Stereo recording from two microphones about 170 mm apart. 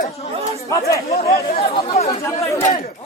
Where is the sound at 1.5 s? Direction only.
40° left (ahead or behind).